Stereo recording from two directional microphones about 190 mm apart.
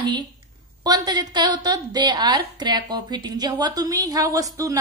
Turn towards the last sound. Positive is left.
turn(degrees=-15)  # may be behind; listen again after turning